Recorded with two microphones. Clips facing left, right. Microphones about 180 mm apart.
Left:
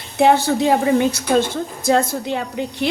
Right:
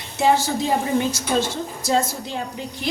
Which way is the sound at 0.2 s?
60° left (ahead or behind).